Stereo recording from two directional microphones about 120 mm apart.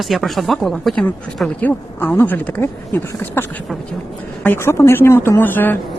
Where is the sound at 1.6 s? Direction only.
15° left (ahead or behind).